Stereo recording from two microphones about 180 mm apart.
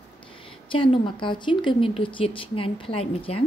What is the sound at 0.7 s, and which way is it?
Speech, 30° left (ahead or behind).